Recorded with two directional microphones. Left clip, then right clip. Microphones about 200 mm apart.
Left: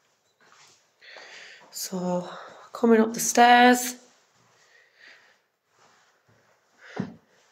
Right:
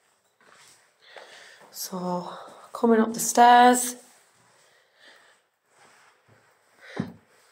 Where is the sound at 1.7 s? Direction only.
20° left (ahead or behind).